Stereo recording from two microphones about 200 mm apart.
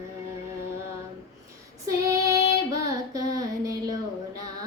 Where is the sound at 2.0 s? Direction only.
15° right (ahead or behind).